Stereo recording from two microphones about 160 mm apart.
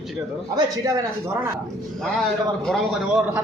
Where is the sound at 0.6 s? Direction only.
20° right (ahead or behind).